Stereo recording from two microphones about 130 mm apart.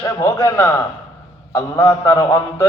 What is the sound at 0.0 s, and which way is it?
A man's voice, 25° left (ahead or behind).